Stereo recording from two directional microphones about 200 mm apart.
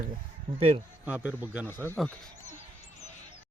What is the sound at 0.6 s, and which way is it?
Speech, 30° right (ahead or behind).